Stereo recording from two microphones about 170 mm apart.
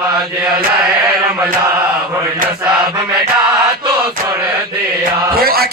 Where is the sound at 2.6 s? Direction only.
5° right (ahead or behind).